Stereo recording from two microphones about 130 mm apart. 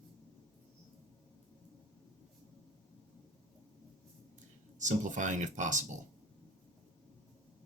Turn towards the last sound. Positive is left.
turn(degrees=-70)  # may be behind; listen again after turning